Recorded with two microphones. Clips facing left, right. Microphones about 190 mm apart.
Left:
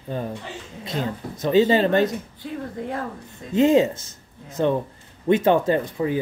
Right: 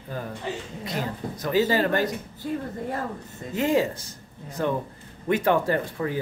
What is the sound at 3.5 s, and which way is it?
Speech, 25° left (ahead or behind).